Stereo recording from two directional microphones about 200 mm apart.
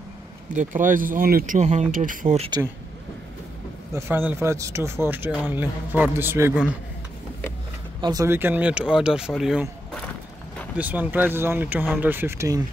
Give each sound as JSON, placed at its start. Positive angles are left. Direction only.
{"t": 0.5, "sound": "speech", "side_deg": -40}
{"t": 3.9, "sound": "speech", "side_deg": -10}
{"t": 8.0, "sound": "speech", "side_deg": -20}